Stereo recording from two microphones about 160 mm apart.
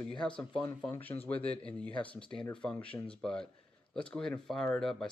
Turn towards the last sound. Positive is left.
turn(degrees=0)  # may be behind; listen again after turning